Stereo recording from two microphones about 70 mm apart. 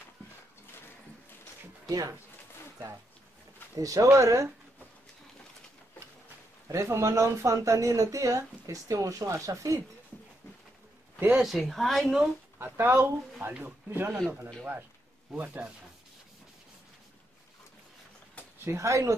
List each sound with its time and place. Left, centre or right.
1.9 s speech: right
3.7 s speech: right
6.7 s speech: right
11.1 s speech: right
11.4 s a woman's voice: centre
12.5 s speech: right
18.6 s speech: right